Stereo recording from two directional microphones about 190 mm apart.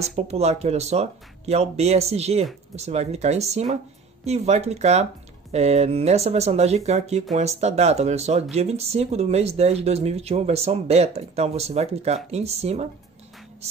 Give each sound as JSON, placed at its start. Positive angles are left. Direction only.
{"t": 0.1, "sound": "speech", "side_deg": -35}